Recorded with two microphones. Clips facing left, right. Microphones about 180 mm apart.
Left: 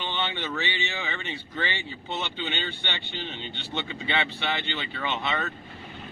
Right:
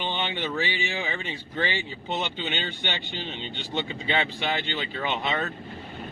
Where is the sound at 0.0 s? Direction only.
15° right (ahead or behind).